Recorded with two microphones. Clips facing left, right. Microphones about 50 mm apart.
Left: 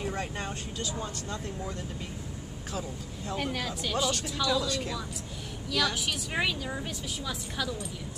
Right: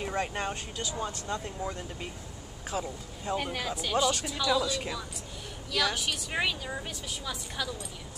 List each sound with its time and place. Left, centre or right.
0.0 s speech: right
3.3 s a woman's voice: centre